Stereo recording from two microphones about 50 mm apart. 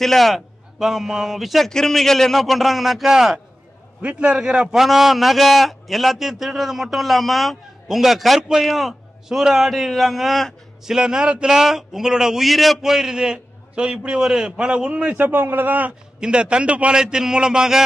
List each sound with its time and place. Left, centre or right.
0.0 s a man's voice: centre
0.7 s a man's voice: centre
1.7 s a man's voice: centre
4.0 s a man's voice: right; by 9.4 s centre
9.4 s a man's voice: centre
9.7 s a man's voice: centre
10.9 s a man's voice: centre
12.4 s a man's voice: centre; by 15.0 s right
15.0 s speech: right
16.2 s a man's voice: centre